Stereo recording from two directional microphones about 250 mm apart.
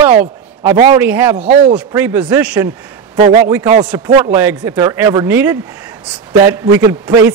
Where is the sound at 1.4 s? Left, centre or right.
Right.